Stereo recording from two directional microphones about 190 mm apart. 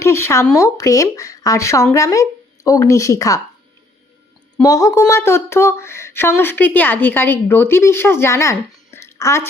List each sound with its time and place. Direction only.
0.0 s speech: 15° left (ahead or behind)
4.6 s speech: 15° left (ahead or behind)